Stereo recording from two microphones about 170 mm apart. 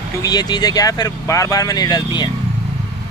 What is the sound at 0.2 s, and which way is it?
Speech, 25° left (ahead or behind).